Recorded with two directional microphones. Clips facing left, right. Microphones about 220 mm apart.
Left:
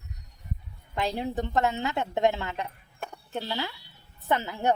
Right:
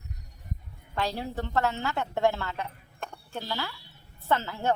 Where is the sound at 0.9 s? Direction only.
20° left (ahead or behind).